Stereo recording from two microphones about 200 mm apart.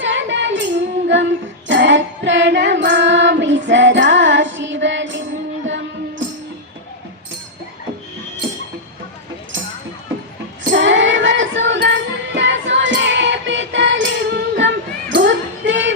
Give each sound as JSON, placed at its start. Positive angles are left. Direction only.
{"t": 0.0, "sound": "child singing", "side_deg": -65}
{"t": 5.6, "sound": "music", "side_deg": -65}
{"t": 10.7, "sound": "child singing", "side_deg": -65}